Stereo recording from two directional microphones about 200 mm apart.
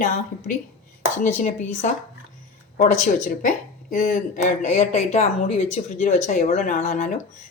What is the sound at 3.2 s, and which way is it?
Speech, 40° left (ahead or behind).